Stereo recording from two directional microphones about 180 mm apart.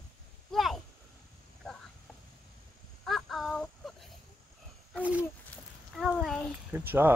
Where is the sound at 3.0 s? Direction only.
Centre (ahead or behind).